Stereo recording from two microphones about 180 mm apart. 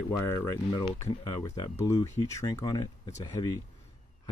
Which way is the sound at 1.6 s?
20° left (ahead or behind).